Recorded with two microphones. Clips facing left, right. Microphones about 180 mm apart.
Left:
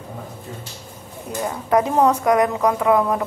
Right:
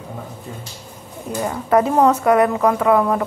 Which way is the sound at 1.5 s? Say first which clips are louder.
Right 2 dB; 10° left (ahead or behind).